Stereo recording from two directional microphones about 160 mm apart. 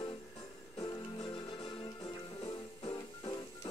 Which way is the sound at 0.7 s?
25° left (ahead or behind).